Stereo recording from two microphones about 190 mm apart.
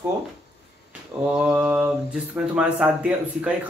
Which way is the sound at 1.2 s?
5° right (ahead or behind).